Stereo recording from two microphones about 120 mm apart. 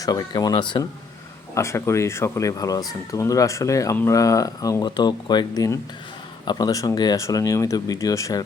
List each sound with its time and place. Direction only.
0.0 s speech: 35° left (ahead or behind)
1.5 s speech: 25° left (ahead or behind)